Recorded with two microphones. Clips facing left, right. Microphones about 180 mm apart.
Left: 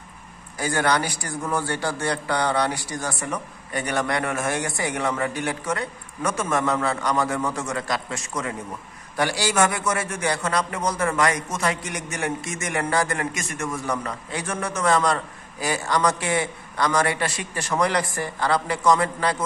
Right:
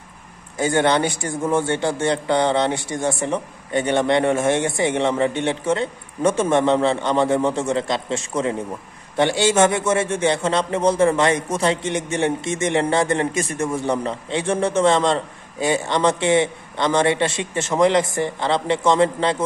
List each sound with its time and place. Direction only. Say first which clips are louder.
0.6 s a man's voice: right 5 dB; 25° right (ahead or behind)